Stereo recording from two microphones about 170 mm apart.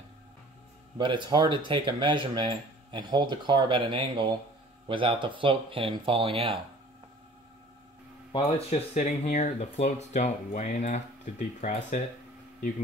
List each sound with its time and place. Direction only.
0.9 s speech: 25° right (ahead or behind)
8.3 s speech: 35° left (ahead or behind)